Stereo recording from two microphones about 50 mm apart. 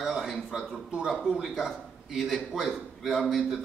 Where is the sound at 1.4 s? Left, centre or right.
Centre.